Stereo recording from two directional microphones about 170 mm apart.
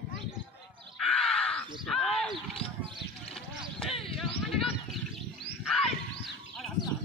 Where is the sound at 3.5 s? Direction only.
Centre (ahead or behind).